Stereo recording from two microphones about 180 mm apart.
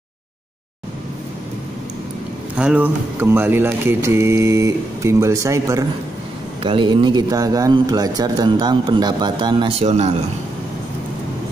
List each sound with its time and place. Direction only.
2.5 s speech: 5° right (ahead or behind)
6.6 s speech: 25° right (ahead or behind)